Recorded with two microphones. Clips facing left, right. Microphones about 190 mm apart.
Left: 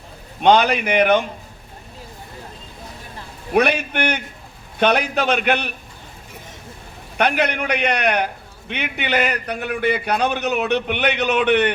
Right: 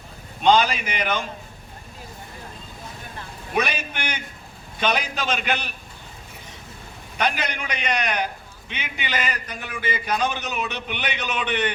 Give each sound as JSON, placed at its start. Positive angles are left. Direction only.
{"t": 0.4, "sound": "a man's voice", "side_deg": 60}
{"t": 3.5, "sound": "a man's voice", "side_deg": 60}
{"t": 7.2, "sound": "a man's voice", "side_deg": 60}